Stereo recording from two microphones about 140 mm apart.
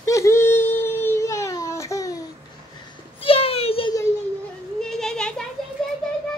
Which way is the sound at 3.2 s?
40° left (ahead or behind).